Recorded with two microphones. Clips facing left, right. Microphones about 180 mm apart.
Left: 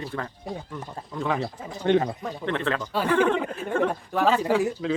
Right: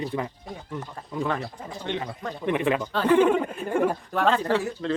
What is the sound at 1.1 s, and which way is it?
Speech, centre (ahead or behind).